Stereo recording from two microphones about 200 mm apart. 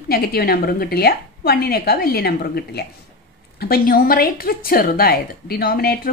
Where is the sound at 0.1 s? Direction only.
50° left (ahead or behind).